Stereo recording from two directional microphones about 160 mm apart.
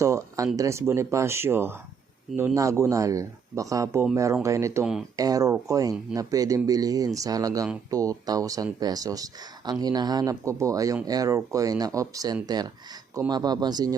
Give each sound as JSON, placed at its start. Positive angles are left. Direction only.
{"t": 0.0, "sound": "speech", "side_deg": -20}